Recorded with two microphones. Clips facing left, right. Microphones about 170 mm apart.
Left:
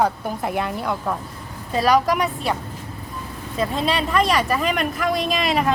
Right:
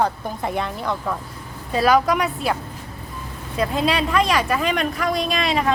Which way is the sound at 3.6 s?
Centre (ahead or behind).